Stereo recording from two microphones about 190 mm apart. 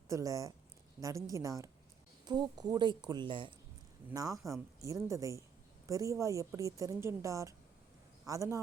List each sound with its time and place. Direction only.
0.1 s a woman's voice: 15° right (ahead or behind)